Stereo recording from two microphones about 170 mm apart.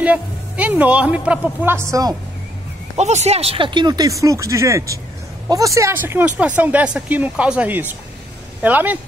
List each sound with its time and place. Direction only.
0.0 s speech: 10° right (ahead or behind)
3.0 s speech: 40° right (ahead or behind); by 8.9 s 10° right (ahead or behind)